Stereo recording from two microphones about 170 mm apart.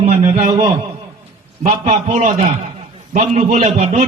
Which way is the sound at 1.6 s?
40° right (ahead or behind).